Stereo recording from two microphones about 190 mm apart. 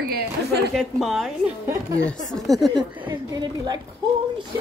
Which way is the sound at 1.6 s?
15° right (ahead or behind).